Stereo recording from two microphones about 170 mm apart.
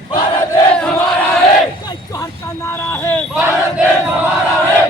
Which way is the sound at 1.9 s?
20° left (ahead or behind).